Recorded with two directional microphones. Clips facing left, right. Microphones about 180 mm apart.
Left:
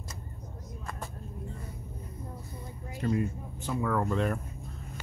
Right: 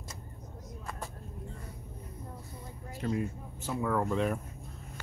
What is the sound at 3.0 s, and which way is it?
Speech, centre (ahead or behind).